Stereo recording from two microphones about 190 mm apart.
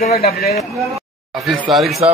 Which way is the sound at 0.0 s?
55° left (ahead or behind).